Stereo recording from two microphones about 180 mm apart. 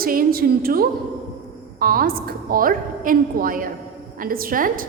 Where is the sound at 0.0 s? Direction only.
55° right (ahead or behind).